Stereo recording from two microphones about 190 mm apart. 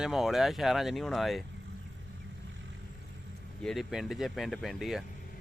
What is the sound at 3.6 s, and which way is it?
Speech, centre (ahead or behind).